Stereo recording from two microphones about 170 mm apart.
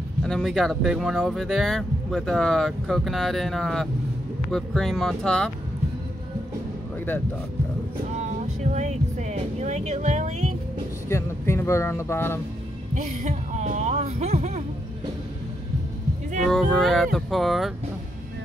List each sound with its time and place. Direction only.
0.2 s speech: centre (ahead or behind)
8.3 s speech: 40° right (ahead or behind)
11.1 s speech: 15° left (ahead or behind)
12.9 s speech: 45° right (ahead or behind)
16.4 s speech: centre (ahead or behind)